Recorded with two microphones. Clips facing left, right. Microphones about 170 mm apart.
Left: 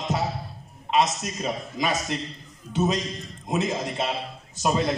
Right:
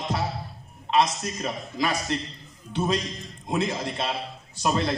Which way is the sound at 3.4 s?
20° left (ahead or behind).